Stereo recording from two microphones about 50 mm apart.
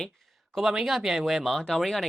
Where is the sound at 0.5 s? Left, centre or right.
Centre.